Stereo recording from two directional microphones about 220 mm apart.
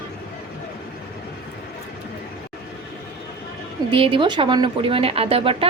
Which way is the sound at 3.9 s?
25° right (ahead or behind).